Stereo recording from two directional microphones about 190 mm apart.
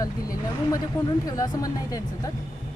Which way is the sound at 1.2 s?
20° left (ahead or behind).